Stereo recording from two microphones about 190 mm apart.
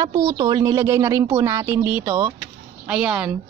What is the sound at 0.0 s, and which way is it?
Speech, 20° right (ahead or behind).